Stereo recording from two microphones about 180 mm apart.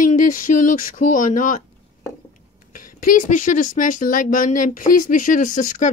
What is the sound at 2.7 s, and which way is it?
Speech, 50° left (ahead or behind).